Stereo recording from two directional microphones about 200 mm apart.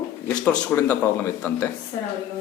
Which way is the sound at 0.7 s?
10° left (ahead or behind).